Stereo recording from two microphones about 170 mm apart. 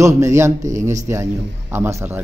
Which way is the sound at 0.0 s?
15° right (ahead or behind).